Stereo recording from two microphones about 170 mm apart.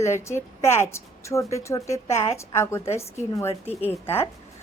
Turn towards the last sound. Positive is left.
turn(degrees=15)  # may be behind; listen again after turning